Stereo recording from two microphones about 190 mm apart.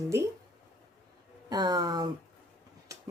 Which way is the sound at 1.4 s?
20° right (ahead or behind).